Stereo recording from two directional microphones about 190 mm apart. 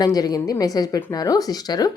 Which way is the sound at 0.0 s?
20° left (ahead or behind).